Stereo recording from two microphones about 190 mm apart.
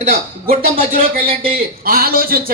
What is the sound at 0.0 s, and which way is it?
Speech, 50° right (ahead or behind).